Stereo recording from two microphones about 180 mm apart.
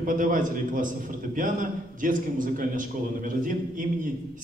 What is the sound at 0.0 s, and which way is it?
A man's voice, 50° right (ahead or behind).